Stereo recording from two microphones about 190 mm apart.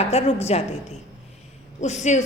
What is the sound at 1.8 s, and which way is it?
Speech, 40° left (ahead or behind).